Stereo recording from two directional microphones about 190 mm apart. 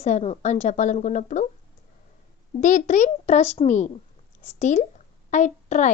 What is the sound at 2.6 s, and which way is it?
A woman's voice, 40° left (ahead or behind).